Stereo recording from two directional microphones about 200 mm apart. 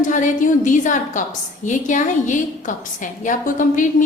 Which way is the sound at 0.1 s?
40° left (ahead or behind).